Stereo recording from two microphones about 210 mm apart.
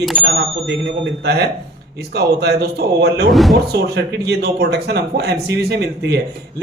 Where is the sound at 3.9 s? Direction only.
50° right (ahead or behind).